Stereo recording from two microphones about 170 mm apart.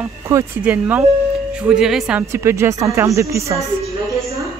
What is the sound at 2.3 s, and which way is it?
Speech, 15° right (ahead or behind).